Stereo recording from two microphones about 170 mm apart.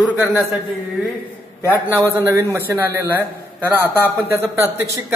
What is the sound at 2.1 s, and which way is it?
A man's voice, 15° right (ahead or behind).